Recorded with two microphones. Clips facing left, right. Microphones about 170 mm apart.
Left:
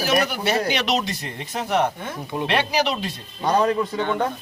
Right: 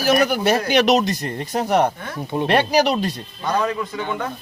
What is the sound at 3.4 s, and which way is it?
Speech, 35° left (ahead or behind).